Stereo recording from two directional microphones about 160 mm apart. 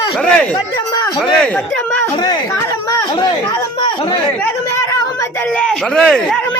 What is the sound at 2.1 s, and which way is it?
Speech, 25° left (ahead or behind).